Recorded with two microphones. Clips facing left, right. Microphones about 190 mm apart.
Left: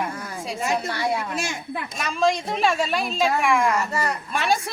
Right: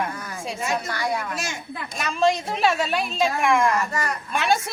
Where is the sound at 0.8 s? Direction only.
30° left (ahead or behind).